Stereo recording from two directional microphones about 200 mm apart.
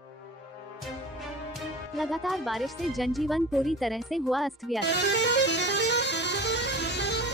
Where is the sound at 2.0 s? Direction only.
Centre (ahead or behind).